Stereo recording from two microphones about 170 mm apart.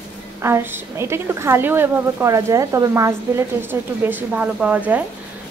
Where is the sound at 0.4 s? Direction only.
15° right (ahead or behind).